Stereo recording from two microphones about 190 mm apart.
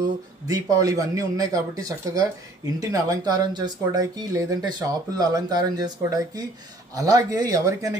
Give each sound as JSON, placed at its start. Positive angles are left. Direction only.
{"t": 0.5, "sound": "speech", "side_deg": -20}